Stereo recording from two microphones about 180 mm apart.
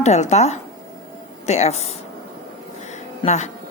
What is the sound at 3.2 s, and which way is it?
Speech, 40° left (ahead or behind).